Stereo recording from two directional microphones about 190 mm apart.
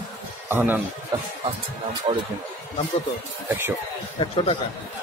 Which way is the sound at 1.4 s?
25° right (ahead or behind).